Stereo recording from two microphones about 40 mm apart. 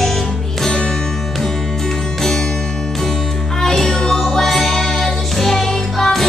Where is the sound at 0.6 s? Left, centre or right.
Centre.